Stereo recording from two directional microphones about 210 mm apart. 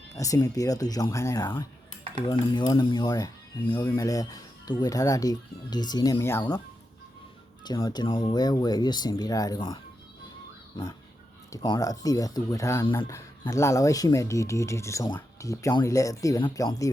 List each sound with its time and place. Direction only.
0.2 s speech: 15° left (ahead or behind)
7.6 s speech: 20° left (ahead or behind)
11.5 s speech: 20° left (ahead or behind)